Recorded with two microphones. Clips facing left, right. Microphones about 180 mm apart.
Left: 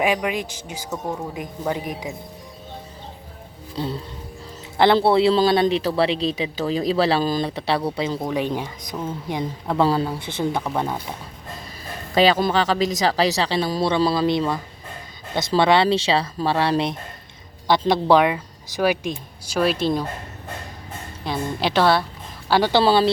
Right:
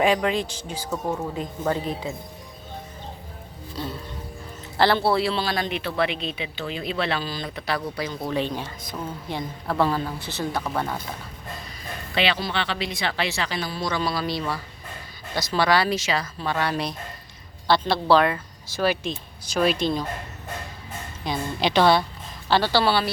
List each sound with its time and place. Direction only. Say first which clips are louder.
0.0 s speech: right 1 dB; 15° left (ahead or behind)
4.9 s speech: left 6 dB; 25° left (ahead or behind)
8.3 s speech: left 3 dB; 10° left (ahead or behind)
9.8 s speech: left 4 dB; 35° left (ahead or behind)
10.5 s speech: left 3 dB; 15° left (ahead or behind)
12.1 s speech: left 8 dB; 40° left (ahead or behind); by 19.9 s 5° left (ahead or behind)
21.2 s a woman's voice: left 1 dB; 5° left (ahead or behind)
22.8 s speech: left 5 dB; 25° left (ahead or behind)